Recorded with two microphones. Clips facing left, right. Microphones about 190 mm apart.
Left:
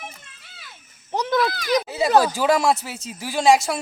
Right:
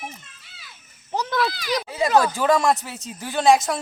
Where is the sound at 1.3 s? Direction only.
50° left (ahead or behind).